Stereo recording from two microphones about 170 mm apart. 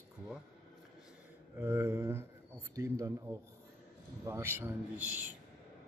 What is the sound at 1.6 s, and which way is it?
A man's voice, 15° right (ahead or behind).